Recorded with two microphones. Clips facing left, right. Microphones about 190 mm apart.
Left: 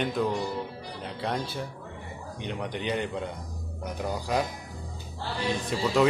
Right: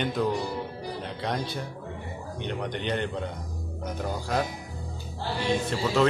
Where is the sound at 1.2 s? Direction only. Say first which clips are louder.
Left 1 dB; 5° left (ahead or behind).